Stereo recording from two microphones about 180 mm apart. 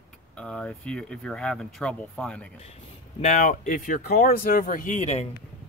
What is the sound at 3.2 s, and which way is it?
Speech, 45° left (ahead or behind).